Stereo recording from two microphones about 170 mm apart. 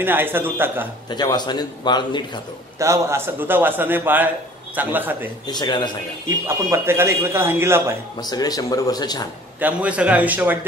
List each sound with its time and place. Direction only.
0.0 s speech: 10° right (ahead or behind)
1.1 s a man's voice: 25° left (ahead or behind)
2.8 s speech: 15° right (ahead or behind)
5.5 s a man's voice: 25° left (ahead or behind)
6.2 s speech: 15° right (ahead or behind)
8.2 s a man's voice: 25° left (ahead or behind)
9.6 s speech: 10° right (ahead or behind)